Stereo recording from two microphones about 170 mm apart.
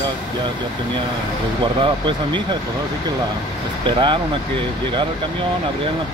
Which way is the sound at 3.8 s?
30° right (ahead or behind).